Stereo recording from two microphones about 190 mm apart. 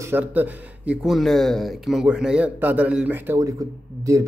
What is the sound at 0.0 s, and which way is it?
A man's voice, 10° right (ahead or behind).